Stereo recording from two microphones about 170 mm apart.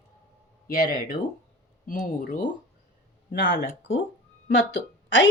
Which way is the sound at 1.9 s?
50° left (ahead or behind).